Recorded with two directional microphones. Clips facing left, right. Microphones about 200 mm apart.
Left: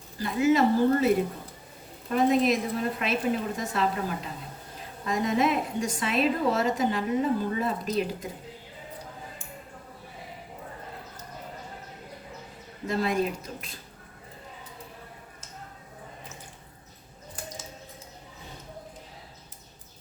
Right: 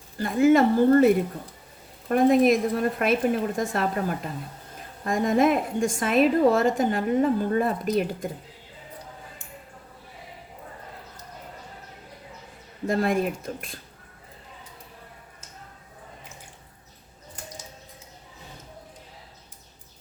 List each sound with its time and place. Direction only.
0.2 s a woman's voice: 50° right (ahead or behind)
12.9 s a woman's voice: 50° right (ahead or behind)